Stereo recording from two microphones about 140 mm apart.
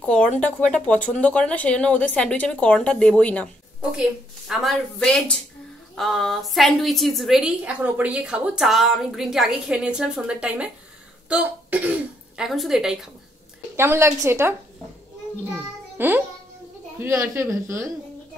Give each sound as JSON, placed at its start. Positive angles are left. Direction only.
{"t": 0.0, "sound": "speech", "side_deg": 5}
{"t": 3.9, "sound": "a woman's voice", "side_deg": -5}
{"t": 13.7, "sound": "a woman's voice", "side_deg": -20}
{"t": 15.5, "sound": "music", "side_deg": -15}
{"t": 17.0, "sound": "speech", "side_deg": -20}